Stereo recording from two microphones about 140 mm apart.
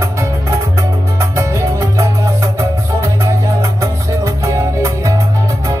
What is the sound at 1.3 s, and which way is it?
Music, 20° right (ahead or behind).